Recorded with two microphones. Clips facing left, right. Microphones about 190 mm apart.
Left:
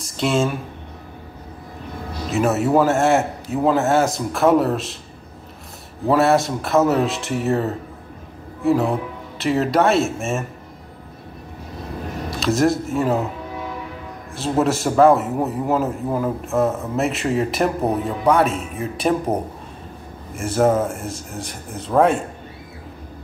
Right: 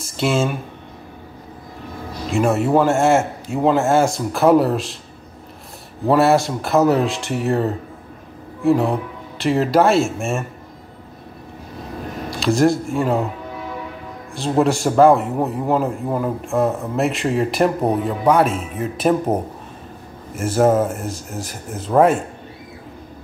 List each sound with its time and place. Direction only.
0.0 s speech: 5° right (ahead or behind)
2.3 s a man's voice: 5° left (ahead or behind)
6.0 s a man's voice: centre (ahead or behind)
12.3 s speech: centre (ahead or behind)
14.6 s a man's voice: centre (ahead or behind)
20.3 s a man's voice: 5° right (ahead or behind)